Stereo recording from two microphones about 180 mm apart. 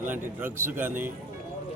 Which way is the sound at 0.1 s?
10° right (ahead or behind).